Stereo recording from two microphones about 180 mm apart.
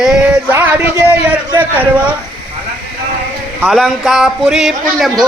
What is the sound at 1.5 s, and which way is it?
Speech, 10° right (ahead or behind).